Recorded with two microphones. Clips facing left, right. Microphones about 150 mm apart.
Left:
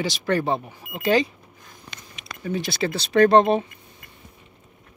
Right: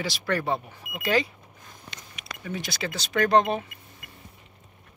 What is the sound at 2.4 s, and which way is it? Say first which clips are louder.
Speech: left 7 dB; 30° left (ahead or behind).